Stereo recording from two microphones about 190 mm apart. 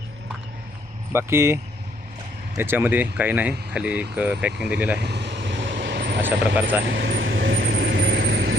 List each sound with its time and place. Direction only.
1.1 s speech: 15° right (ahead or behind)
2.6 s speech: 10° right (ahead or behind)
4.9 s vehicle: 60° right (ahead or behind)
6.2 s speech: 10° right (ahead or behind)
6.8 s vehicle: 70° right (ahead or behind)